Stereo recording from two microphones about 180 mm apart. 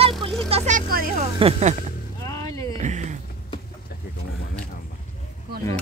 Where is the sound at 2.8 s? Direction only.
40° right (ahead or behind).